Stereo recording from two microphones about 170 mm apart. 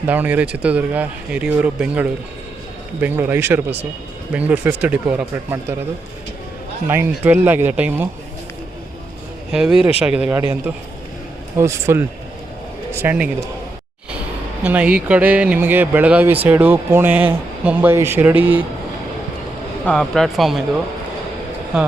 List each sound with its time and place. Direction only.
0.1 s speech: 10° right (ahead or behind)
6.8 s speech: 15° right (ahead or behind)
9.5 s a man's voice: 5° right (ahead or behind)
14.6 s speech: 10° right (ahead or behind)
19.8 s speech: 5° left (ahead or behind)